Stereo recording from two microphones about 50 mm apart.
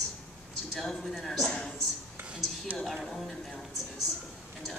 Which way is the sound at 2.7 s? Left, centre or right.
Right.